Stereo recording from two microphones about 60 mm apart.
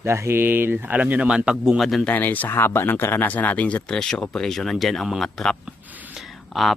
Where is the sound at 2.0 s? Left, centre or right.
Left.